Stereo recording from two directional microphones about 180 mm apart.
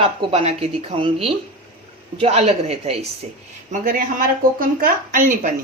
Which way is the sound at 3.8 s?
50° right (ahead or behind).